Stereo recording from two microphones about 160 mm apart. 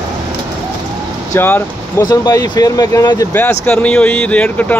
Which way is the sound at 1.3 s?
15° left (ahead or behind).